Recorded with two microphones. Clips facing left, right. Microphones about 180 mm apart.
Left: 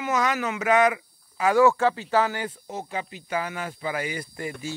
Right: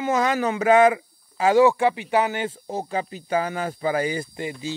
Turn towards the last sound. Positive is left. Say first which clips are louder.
# right 3 dB
turn(degrees=-25)  # may be behind; listen again after turning